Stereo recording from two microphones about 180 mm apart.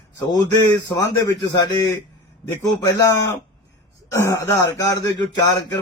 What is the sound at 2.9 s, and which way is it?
A man's voice, 20° left (ahead or behind).